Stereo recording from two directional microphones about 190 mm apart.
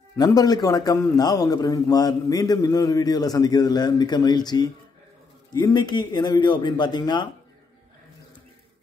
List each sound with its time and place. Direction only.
0.2 s a man's voice: 20° left (ahead or behind)